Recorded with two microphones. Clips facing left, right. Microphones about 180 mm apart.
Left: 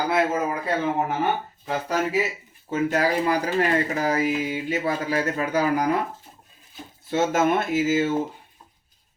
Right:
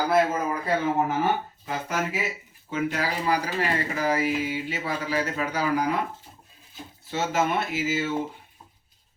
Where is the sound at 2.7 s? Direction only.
45° left (ahead or behind).